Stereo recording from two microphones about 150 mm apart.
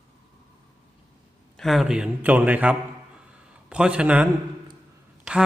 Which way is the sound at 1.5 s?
Centre (ahead or behind).